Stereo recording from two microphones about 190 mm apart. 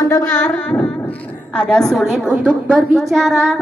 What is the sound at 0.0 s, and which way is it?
Carnatic music, 15° left (ahead or behind).